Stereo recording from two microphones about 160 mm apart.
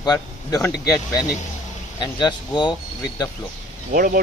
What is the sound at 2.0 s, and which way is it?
Speech, 30° left (ahead or behind).